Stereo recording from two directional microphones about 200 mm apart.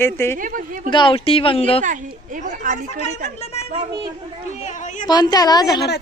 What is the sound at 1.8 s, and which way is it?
A woman's voice, 40° right (ahead or behind).